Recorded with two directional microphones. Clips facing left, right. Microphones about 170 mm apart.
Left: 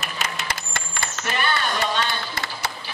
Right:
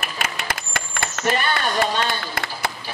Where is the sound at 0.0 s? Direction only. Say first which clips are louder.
Right 1 dB; 55° right (ahead or behind).